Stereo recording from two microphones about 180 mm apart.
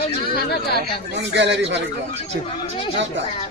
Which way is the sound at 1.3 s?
75° right (ahead or behind).